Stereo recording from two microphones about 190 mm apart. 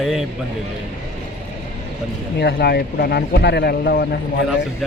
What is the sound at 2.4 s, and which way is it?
Speech, 60° left (ahead or behind).